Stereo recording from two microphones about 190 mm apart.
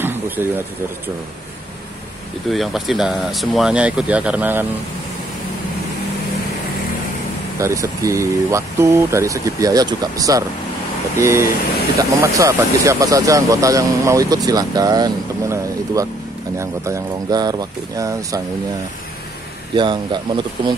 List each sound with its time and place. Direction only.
0.4 s speech: 10° right (ahead or behind)
2.5 s speech: centre (ahead or behind)
7.5 s speech: 15° right (ahead or behind)
19.7 s speech: 25° right (ahead or behind)